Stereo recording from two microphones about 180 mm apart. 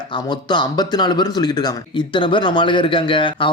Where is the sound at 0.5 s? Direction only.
25° left (ahead or behind).